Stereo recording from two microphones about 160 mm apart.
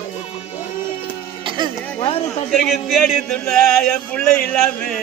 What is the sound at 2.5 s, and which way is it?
Speech, centre (ahead or behind).